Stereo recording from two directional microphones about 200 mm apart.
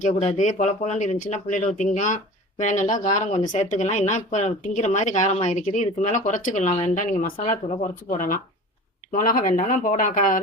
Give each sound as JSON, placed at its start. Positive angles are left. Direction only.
{"t": 0.0, "sound": "speech", "side_deg": 35}